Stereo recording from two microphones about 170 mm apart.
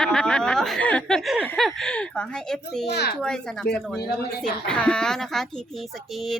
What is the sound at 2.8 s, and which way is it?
Speech, 75° left (ahead or behind).